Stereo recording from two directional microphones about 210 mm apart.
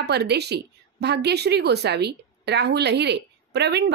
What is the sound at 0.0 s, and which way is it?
A woman's voice, 50° right (ahead or behind).